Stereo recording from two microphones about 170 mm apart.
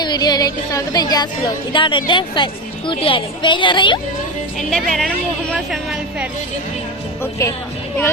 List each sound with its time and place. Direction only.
0.0 s a woman's voice: 25° left (ahead or behind)
4.7 s a woman's voice: 5° left (ahead or behind)
7.2 s speech: 15° left (ahead or behind)